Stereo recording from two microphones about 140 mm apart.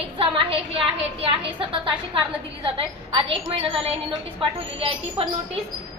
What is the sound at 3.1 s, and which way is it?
A woman's voice, 40° right (ahead or behind).